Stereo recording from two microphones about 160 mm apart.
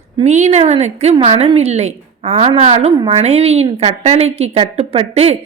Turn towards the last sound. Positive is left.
turn(degrees=-40)  # may be behind; listen again after turning